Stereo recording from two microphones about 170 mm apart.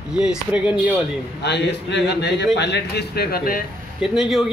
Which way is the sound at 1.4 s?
80° left.